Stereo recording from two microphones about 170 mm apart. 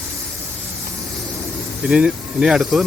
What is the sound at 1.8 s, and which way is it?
Speech, 5° right (ahead or behind).